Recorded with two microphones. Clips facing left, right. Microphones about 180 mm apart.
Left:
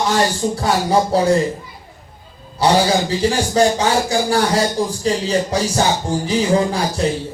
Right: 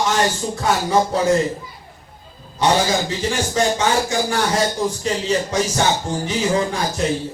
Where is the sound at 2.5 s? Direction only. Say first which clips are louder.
Left 3 dB; 35° left (ahead or behind).